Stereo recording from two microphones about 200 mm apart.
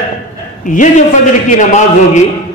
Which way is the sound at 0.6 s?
40° left (ahead or behind).